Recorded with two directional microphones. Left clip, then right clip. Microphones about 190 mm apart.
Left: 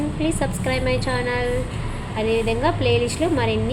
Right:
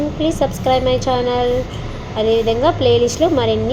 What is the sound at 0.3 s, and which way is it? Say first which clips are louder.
A woman's voice: right 8 dB; centre (ahead or behind).